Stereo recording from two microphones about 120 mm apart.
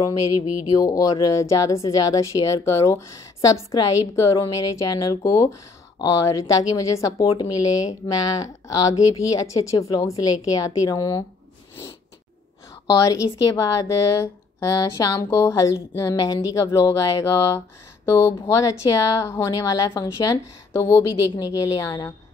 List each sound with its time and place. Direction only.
0.7 s speech: 30° left (ahead or behind)
12.8 s speech: 30° left (ahead or behind)